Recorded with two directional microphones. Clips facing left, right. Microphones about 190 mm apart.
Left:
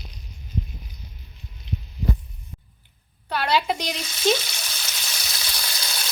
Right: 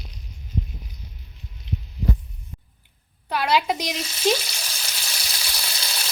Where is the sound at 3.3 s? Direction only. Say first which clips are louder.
Right 1 dB; 10° right (ahead or behind).